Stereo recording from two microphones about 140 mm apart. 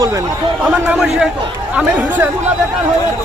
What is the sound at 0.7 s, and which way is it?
Speech, 5° right (ahead or behind).